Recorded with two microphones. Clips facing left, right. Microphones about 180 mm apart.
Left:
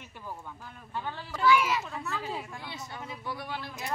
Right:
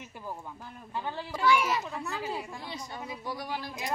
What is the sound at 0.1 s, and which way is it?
Speech, 10° right (ahead or behind).